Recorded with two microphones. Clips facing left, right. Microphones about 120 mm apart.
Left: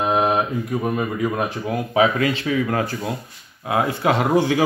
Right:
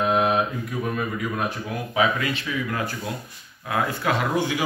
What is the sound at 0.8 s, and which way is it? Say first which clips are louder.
A man's voice: left 4 dB; 30° left (ahead or behind).